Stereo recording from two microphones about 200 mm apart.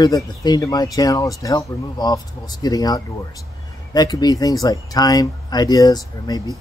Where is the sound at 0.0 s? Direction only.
20° left (ahead or behind).